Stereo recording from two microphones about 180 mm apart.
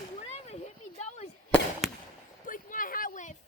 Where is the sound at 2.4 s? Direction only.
50° left (ahead or behind).